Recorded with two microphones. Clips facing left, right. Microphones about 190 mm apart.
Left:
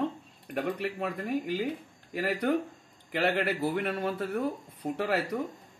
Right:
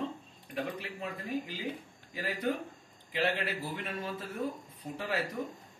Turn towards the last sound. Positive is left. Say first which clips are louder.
# left 6 dB
turn(degrees=65)  # may be behind; listen again after turning